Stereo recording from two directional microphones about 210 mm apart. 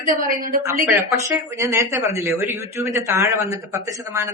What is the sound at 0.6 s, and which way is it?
Speech, 15° right (ahead or behind).